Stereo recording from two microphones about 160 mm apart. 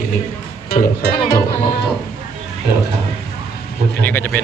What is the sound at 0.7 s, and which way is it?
Speech, 70° left (ahead or behind).